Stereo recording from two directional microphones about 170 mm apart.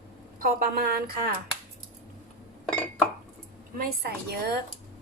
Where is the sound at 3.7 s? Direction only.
60° right (ahead or behind).